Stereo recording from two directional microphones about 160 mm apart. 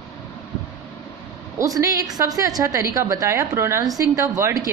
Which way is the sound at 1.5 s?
20° right (ahead or behind).